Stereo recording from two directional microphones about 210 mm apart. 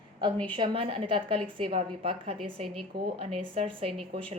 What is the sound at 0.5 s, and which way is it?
A woman's voice, 25° right (ahead or behind).